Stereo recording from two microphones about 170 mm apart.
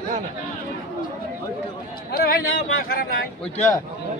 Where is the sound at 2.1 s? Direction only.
60° left (ahead or behind).